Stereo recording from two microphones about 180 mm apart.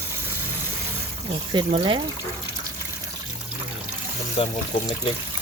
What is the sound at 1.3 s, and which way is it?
Speech, 30° right (ahead or behind).